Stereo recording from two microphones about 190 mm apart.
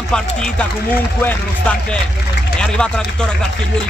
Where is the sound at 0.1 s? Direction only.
5° left (ahead or behind).